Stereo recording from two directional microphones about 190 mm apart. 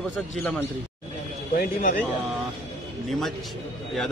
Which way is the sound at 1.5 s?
45° left (ahead or behind).